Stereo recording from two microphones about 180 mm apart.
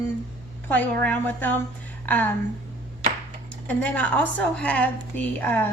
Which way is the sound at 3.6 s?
10° left (ahead or behind).